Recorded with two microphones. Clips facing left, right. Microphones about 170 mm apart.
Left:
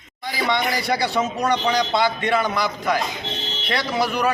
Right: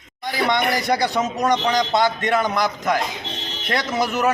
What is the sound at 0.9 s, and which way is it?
A man's voice, 15° right (ahead or behind).